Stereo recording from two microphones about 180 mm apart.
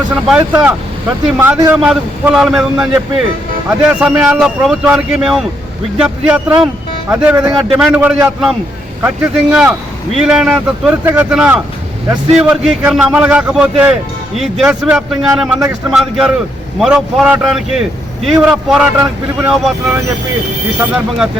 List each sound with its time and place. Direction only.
0.3 s a man's voice: 10° right (ahead or behind)